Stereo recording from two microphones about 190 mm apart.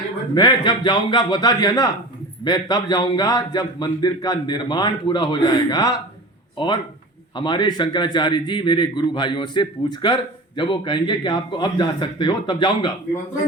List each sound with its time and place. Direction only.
0.3 s a man's voice: 20° left (ahead or behind)
7.3 s a man's voice: 25° left (ahead or behind)